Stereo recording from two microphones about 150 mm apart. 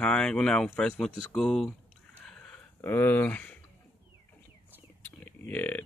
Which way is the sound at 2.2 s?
5° left (ahead or behind).